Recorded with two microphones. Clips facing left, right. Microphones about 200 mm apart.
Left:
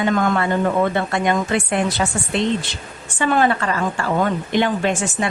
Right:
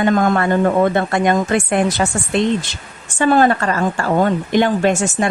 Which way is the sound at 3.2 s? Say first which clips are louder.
Right 4 dB; 40° right (ahead or behind).